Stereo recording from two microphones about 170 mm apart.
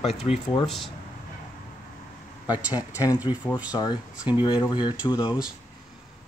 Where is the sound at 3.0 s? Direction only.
20° left (ahead or behind).